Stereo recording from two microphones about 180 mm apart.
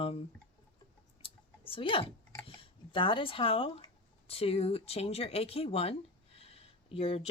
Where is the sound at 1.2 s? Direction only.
30° left (ahead or behind).